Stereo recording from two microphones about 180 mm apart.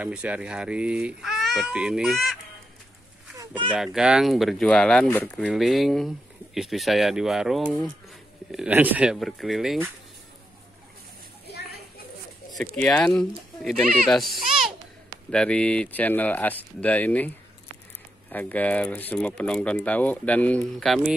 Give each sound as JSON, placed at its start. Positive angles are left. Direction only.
{"t": 0.0, "sound": "speech", "side_deg": -5}
{"t": 3.3, "sound": "a sound", "side_deg": -25}
{"t": 3.7, "sound": "speech", "side_deg": -5}
{"t": 12.7, "sound": "speech", "side_deg": 5}
{"t": 15.3, "sound": "speech", "side_deg": 5}
{"t": 18.3, "sound": "speech", "side_deg": 10}